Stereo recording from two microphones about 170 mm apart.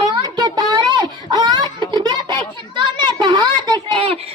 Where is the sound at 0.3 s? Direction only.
25° right (ahead or behind).